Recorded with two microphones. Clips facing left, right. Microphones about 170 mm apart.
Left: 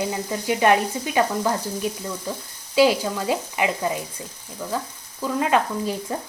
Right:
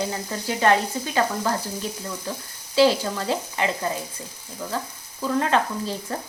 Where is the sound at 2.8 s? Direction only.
15° left (ahead or behind).